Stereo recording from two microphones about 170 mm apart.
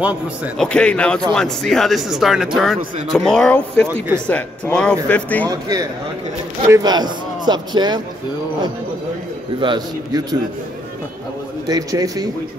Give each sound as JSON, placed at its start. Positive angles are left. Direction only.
{"t": 0.6, "sound": "speech", "side_deg": 5}
{"t": 5.5, "sound": "a man's voice", "side_deg": -20}
{"t": 9.6, "sound": "a man's voice", "side_deg": -25}
{"t": 11.6, "sound": "a man's voice", "side_deg": -20}